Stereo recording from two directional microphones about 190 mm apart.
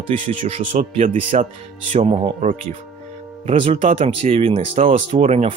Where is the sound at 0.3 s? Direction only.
30° right (ahead or behind).